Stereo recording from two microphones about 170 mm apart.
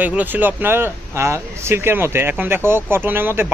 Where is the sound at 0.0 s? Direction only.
10° right (ahead or behind).